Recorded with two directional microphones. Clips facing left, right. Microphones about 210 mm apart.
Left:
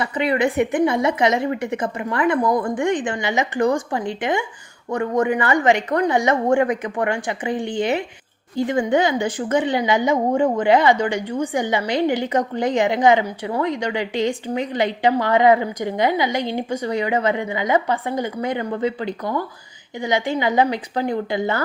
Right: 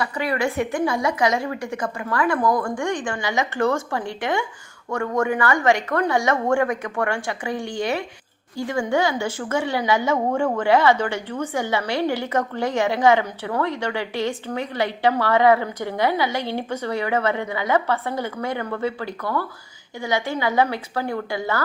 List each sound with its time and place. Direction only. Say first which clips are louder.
0.0 s a woman's voice: left 4 dB; 20° left (ahead or behind)